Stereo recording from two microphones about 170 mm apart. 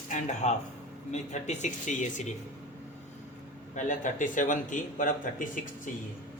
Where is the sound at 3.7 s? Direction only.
45° left (ahead or behind).